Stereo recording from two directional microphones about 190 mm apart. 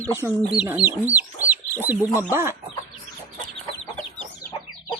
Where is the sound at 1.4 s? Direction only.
10° right (ahead or behind).